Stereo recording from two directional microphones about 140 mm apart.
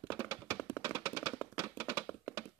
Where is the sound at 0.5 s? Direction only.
15° left (ahead or behind).